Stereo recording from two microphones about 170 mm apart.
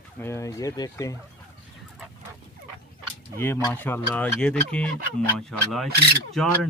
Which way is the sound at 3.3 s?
15° left (ahead or behind).